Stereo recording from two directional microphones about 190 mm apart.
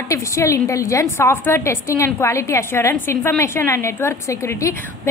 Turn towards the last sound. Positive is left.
turn(degrees=15)  # may be behind; listen again after turning